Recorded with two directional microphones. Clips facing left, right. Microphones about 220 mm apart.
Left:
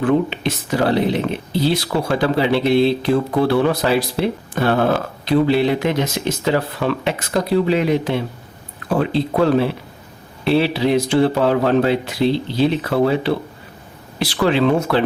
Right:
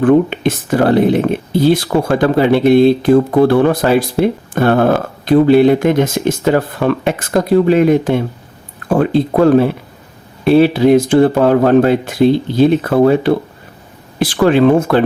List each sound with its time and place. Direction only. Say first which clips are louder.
0.0 s speech: right 7 dB; 50° right (ahead or behind)